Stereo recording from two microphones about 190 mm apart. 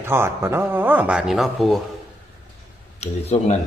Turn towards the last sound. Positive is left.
turn(degrees=35)  # may be behind; listen again after turning